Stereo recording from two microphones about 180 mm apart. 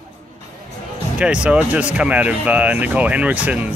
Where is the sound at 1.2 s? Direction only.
5° right (ahead or behind).